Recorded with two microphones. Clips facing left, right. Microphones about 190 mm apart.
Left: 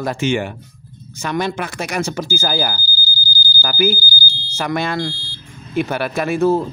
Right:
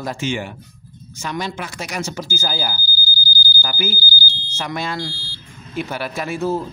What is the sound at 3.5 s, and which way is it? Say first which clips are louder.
Speech: left 8 dB; 65° left (ahead or behind).